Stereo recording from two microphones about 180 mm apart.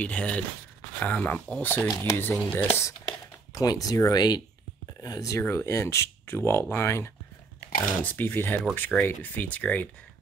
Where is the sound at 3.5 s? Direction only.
20° left (ahead or behind).